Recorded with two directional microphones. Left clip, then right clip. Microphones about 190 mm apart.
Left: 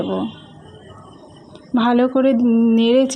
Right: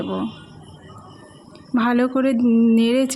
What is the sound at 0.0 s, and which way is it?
Speech, 15° right (ahead or behind).